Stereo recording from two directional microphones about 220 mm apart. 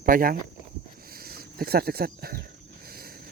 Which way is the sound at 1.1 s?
45° right (ahead or behind).